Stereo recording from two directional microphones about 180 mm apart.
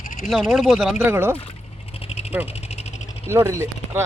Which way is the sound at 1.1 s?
15° right (ahead or behind).